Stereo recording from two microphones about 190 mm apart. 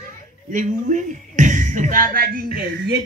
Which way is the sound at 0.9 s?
40° right (ahead or behind).